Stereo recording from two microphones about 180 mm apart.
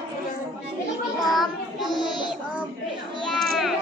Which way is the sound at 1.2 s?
Centre (ahead or behind).